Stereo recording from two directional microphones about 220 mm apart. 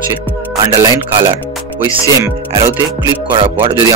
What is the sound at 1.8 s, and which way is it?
Speech, 20° right (ahead or behind).